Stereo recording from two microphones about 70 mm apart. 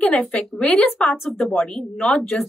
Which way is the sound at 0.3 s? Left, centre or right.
Centre.